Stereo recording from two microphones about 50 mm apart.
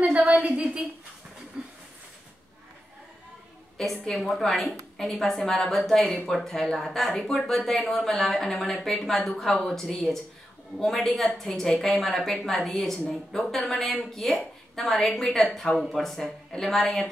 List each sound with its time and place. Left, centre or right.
0.3 s speech: right
1.6 s a sound: centre
3.7 s a woman's voice: centre